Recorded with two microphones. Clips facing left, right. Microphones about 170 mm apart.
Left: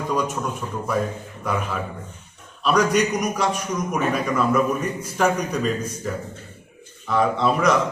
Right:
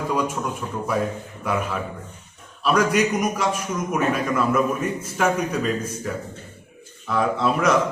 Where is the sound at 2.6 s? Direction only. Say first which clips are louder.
Even; 5° right (ahead or behind).